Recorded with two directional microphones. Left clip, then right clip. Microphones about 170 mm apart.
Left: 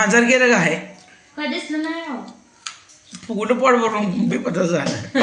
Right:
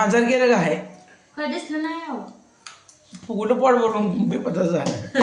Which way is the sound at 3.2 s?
10° right (ahead or behind).